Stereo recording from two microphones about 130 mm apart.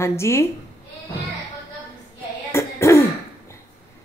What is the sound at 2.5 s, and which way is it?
Throat clearing, 20° left (ahead or behind).